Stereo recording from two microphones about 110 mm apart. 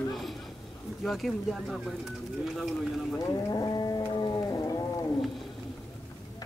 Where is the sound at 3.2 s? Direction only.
35° left (ahead or behind).